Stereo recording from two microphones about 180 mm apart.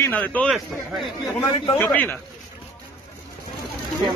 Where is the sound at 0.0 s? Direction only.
10° left (ahead or behind).